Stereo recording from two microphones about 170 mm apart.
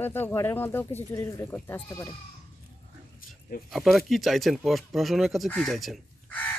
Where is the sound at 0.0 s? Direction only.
10° left (ahead or behind).